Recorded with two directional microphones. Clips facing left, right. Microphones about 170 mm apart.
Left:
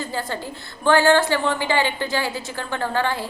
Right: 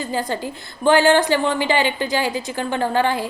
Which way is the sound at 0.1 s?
15° right (ahead or behind).